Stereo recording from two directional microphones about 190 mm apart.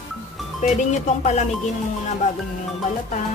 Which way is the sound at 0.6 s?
40° left (ahead or behind).